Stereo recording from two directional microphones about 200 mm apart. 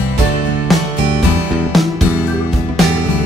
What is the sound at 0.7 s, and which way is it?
Music, centre (ahead or behind).